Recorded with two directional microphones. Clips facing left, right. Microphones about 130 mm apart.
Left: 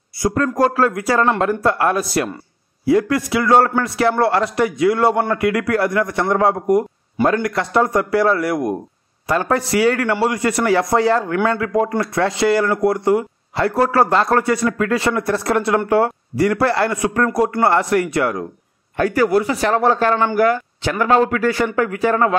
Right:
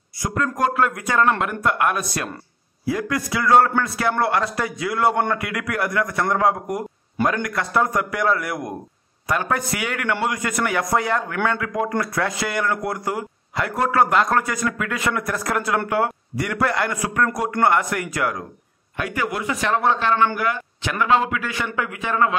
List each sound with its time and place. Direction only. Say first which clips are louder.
0.2 s speech: left 6 dB; 35° left (ahead or behind)